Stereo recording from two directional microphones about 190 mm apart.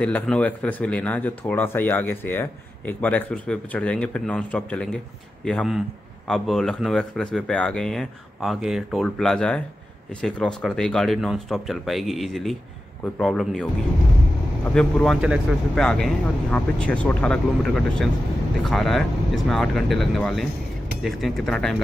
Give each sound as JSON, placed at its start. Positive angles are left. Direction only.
{"t": 0.0, "sound": "speech", "side_deg": 5}